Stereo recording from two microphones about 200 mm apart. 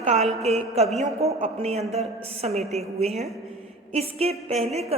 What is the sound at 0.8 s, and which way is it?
A woman's voice, 30° right (ahead or behind).